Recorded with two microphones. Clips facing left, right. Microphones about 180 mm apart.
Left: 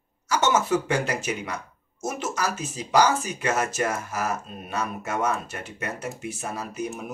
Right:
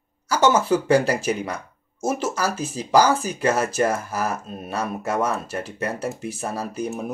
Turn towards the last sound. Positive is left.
turn(degrees=-35)  # may be behind; listen again after turning